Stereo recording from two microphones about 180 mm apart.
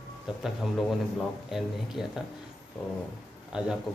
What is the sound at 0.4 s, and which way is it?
Speech, centre (ahead or behind).